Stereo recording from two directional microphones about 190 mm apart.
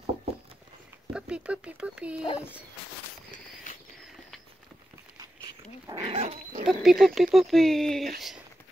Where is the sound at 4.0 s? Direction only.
Centre (ahead or behind).